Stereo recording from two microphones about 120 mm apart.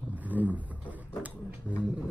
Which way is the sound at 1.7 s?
15° left (ahead or behind).